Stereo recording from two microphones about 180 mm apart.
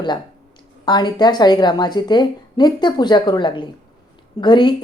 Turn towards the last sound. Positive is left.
turn(degrees=25)  # may be behind; listen again after turning